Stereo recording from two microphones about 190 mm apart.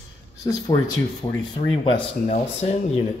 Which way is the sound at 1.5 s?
35° left (ahead or behind).